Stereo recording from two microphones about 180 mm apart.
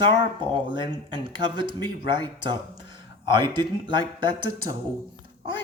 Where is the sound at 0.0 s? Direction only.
25° right (ahead or behind).